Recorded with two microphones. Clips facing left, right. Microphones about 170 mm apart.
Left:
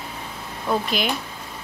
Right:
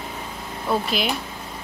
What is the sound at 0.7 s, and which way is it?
Speech, centre (ahead or behind).